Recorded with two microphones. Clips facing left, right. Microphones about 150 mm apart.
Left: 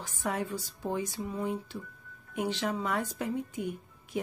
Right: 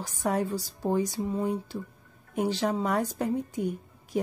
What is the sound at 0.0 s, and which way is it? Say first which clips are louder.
Speech: right 5 dB; 35° right (ahead or behind).